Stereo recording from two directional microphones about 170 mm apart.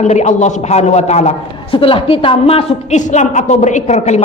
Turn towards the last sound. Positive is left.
turn(degrees=40)  # may be behind; listen again after turning